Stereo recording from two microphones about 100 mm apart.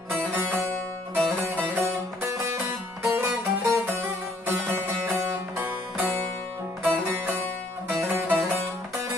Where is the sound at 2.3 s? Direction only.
25° right (ahead or behind).